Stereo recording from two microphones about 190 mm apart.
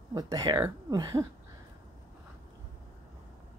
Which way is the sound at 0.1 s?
20° right (ahead or behind).